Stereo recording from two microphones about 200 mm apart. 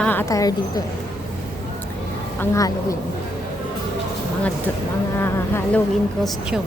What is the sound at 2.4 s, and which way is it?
Speech, 15° left (ahead or behind).